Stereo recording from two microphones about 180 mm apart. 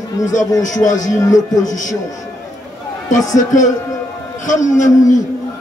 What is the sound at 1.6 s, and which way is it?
Speech, 45° left (ahead or behind).